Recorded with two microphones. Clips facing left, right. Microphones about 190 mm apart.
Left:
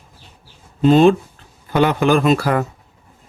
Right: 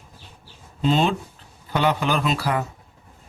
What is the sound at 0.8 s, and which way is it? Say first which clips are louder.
Speech: left 9 dB; 50° left (ahead or behind).